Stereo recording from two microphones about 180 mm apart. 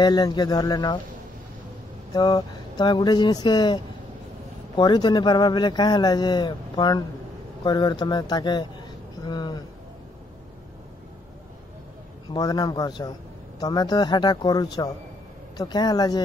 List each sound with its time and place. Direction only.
0.0 s speech: 25° left (ahead or behind)
2.1 s speech: 25° left (ahead or behind)
12.4 s speech: 20° left (ahead or behind)